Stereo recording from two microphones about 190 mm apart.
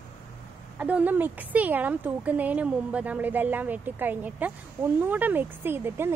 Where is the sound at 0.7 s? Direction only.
10° right (ahead or behind).